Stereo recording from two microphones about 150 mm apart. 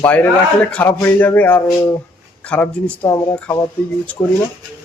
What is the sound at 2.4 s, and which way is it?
Speech, 10° left (ahead or behind).